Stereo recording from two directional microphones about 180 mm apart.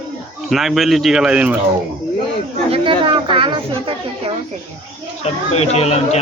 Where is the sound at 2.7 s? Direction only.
30° right (ahead or behind).